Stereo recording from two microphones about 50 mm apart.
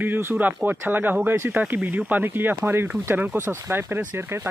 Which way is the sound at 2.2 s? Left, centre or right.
Right.